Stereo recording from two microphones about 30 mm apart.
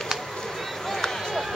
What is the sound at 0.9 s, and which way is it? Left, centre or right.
Run, centre.